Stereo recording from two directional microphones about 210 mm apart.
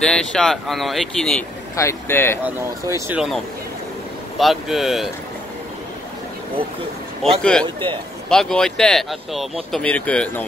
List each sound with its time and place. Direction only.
0.0 s speech: 5° left (ahead or behind)
1.8 s speech: 10° left (ahead or behind)
3.1 s speech: 5° right (ahead or behind)
4.4 s speech: centre (ahead or behind)
7.2 s speech: centre (ahead or behind)
7.6 s speech: 20° right (ahead or behind)
8.3 s speech: centre (ahead or behind)